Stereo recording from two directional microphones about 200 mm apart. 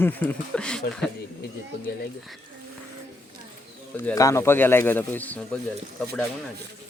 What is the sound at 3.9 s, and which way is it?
Speech, 15° left (ahead or behind).